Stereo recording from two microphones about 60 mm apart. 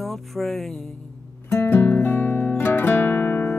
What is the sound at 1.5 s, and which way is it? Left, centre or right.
Music, left.